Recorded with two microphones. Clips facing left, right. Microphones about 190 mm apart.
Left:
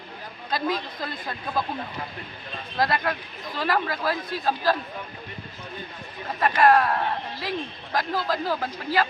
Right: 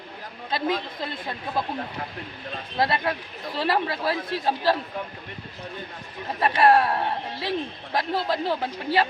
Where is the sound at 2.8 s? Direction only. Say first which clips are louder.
Even; 25° right (ahead or behind).